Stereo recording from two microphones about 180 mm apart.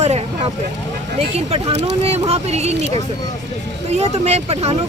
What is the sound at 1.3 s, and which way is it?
Speech, 35° right (ahead or behind).